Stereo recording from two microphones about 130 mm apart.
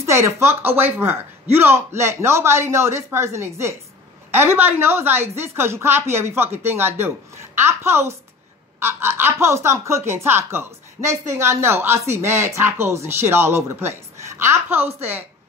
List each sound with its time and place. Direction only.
0.0 s a woman's voice: 20° right (ahead or behind)